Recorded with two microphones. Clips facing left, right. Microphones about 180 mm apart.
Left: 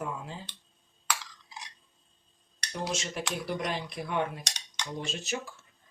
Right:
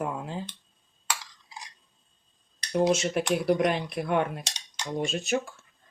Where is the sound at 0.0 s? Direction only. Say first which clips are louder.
Right 5 dB; 60° right (ahead or behind).